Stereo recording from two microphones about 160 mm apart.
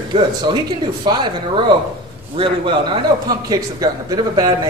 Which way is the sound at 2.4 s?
35° right (ahead or behind).